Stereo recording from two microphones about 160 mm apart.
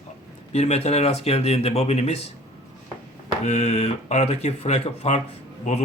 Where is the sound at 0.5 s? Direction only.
40° left (ahead or behind).